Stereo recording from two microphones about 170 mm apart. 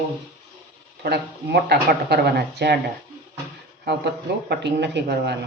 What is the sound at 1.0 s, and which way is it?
Speech, 75° right (ahead or behind).